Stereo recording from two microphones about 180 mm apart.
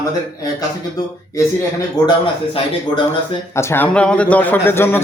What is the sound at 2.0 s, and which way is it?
Speech, 20° left (ahead or behind).